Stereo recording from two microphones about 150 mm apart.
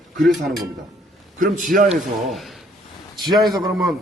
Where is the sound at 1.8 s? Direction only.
Centre (ahead or behind).